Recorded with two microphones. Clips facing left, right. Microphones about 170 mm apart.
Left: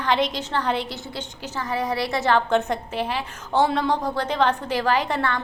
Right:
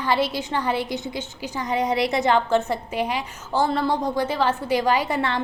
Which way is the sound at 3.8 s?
10° right (ahead or behind).